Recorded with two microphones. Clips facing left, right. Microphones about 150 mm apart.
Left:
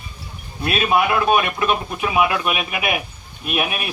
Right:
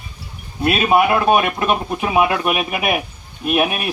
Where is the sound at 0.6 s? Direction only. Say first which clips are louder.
Right 4 dB; 45° right (ahead or behind).